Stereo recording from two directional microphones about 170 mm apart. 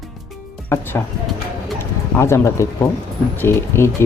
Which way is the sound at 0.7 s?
10° left (ahead or behind).